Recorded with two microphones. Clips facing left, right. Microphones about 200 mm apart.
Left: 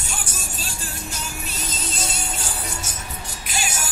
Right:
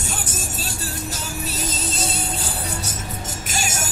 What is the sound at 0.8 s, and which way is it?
Music, 40° right (ahead or behind).